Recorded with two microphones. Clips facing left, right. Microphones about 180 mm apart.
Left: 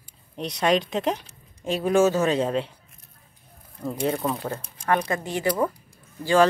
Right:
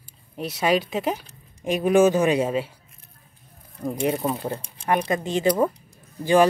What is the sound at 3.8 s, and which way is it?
Speech, 15° right (ahead or behind).